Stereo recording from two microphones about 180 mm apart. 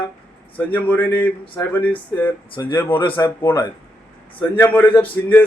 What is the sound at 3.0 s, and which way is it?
Speech, 25° left (ahead or behind).